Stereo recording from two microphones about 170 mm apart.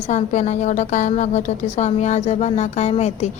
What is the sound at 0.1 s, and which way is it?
A woman's voice, 45° left (ahead or behind).